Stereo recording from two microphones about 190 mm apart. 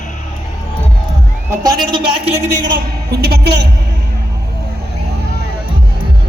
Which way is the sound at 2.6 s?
50° right (ahead or behind).